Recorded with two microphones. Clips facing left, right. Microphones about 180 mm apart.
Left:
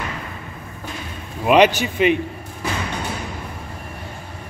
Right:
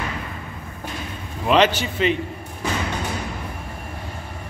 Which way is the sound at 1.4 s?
10° left (ahead or behind).